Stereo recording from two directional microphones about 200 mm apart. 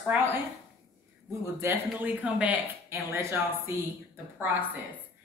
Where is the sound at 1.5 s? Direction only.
10° right (ahead or behind).